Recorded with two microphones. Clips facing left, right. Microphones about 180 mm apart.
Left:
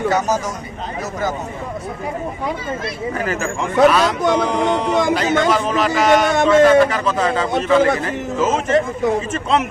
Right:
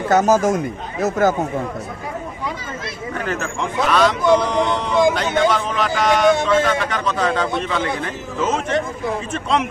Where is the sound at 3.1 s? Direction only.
5° left (ahead or behind).